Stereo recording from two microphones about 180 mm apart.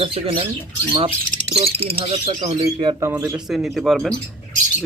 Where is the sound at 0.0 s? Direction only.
30° right (ahead or behind).